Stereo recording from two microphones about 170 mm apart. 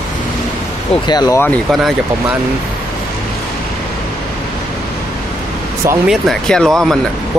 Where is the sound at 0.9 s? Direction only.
25° left (ahead or behind).